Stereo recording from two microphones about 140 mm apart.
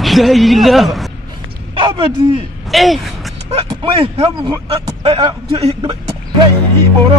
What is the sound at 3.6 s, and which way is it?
A man's voice, 40° right (ahead or behind).